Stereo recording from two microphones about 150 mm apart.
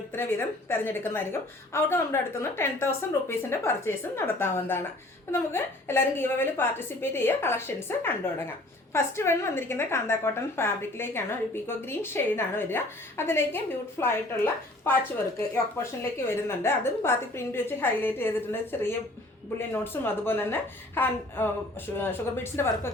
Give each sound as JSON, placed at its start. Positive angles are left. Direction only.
{"t": 0.1, "sound": "a woman's voice", "side_deg": 15}
{"t": 22.5, "sound": "a woman's voice", "side_deg": 15}